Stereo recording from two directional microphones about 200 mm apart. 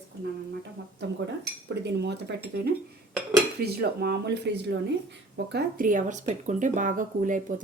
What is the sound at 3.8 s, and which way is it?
Speech, 55° right (ahead or behind).